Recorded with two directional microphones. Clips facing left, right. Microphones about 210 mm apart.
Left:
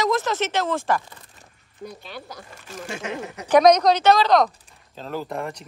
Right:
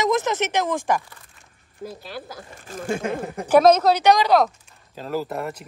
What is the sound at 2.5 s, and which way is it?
Speech, 50° right (ahead or behind).